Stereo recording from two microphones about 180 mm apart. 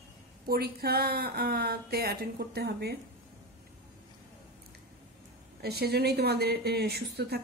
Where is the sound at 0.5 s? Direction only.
60° right (ahead or behind).